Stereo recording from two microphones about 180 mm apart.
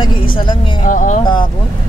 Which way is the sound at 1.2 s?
25° left (ahead or behind).